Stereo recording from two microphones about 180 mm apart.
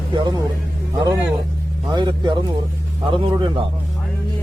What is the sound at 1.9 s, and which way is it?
A man's voice, 25° right (ahead or behind).